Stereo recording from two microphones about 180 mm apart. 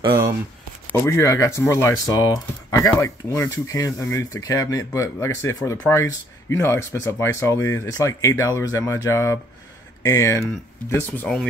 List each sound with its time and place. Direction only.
0.8 s speech: 15° left (ahead or behind)